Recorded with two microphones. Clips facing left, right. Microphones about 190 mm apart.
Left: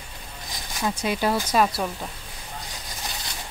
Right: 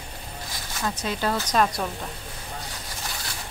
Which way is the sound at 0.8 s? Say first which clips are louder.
Left 3 dB; 10° left (ahead or behind).